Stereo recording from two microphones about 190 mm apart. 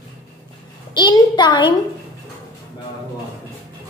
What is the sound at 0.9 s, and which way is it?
Speech, 25° left (ahead or behind).